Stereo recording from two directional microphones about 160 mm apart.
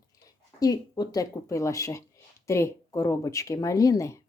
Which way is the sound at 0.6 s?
25° left (ahead or behind).